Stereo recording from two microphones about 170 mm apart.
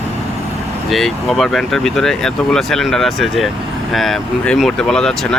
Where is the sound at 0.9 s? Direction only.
Centre (ahead or behind).